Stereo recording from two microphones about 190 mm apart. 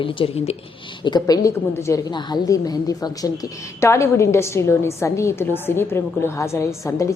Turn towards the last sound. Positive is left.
turn(degrees=15)  # may be behind; listen again after turning